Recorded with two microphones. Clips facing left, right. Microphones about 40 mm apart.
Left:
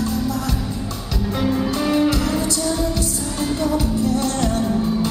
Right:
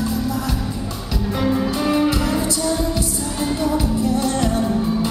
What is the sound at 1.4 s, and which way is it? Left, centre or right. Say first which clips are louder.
Music: right 1 dB; centre.